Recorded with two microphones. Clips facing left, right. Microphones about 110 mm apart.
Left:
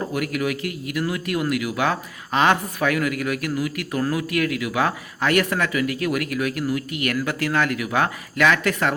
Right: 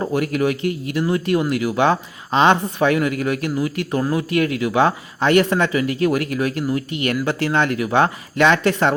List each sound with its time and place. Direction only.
0.0 s speech: 30° right (ahead or behind)